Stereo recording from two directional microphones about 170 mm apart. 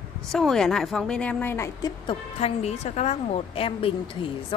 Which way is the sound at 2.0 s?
35° left (ahead or behind).